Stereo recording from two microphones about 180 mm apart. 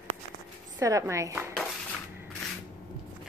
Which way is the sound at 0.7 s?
15° right (ahead or behind).